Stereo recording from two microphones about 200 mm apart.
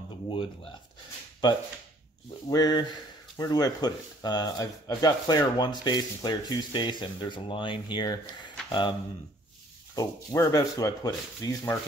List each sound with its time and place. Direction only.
0.3 s speech: 25° left (ahead or behind)
2.5 s speech: 20° left (ahead or behind)
9.9 s speech: 15° left (ahead or behind)